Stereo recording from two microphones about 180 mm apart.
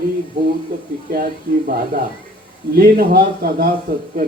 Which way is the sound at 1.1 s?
55° right (ahead or behind).